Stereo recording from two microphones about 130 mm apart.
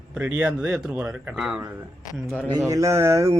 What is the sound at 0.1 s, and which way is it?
Speech, 10° right (ahead or behind).